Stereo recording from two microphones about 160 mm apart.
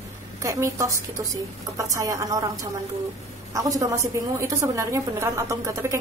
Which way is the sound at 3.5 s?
20° right (ahead or behind).